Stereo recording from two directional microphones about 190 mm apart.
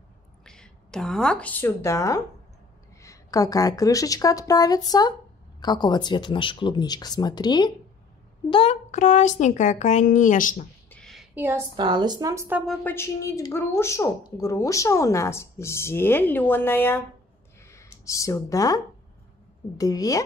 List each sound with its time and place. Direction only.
0.5 s a woman's voice: 5° left (ahead or behind); by 10.7 s 45° left (ahead or behind)
10.9 s a sound: 5° left (ahead or behind)
11.3 s a woman's voice: 10° right (ahead or behind)
11.7 s speech: 25° right (ahead or behind)
12.6 s a woman's voice: 10° left (ahead or behind)
17.6 s a sound: 15° left (ahead or behind)
19.8 s speech: 20° left (ahead or behind)